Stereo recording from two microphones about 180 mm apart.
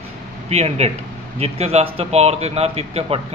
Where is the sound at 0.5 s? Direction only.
35° right (ahead or behind).